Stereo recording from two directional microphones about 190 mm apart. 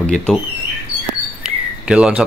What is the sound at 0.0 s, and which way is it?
Speech, 5° left (ahead or behind).